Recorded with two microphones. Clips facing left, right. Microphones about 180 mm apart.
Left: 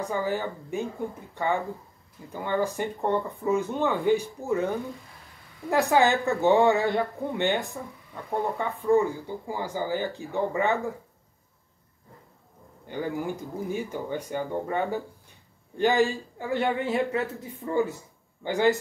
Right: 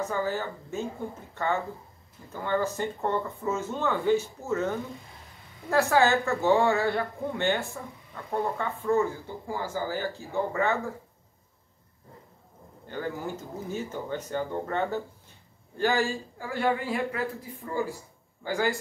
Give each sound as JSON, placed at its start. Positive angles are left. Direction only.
{"t": 0.0, "sound": "speech", "side_deg": 15}
{"t": 12.8, "sound": "speech", "side_deg": 15}